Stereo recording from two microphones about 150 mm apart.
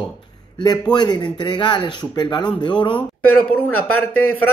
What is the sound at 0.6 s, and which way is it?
Speech, 30° left (ahead or behind).